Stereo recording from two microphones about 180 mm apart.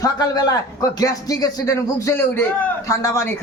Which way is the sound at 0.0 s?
20° left (ahead or behind).